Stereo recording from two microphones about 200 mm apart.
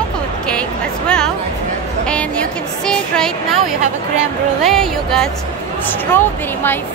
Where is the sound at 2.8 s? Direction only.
5° left (ahead or behind).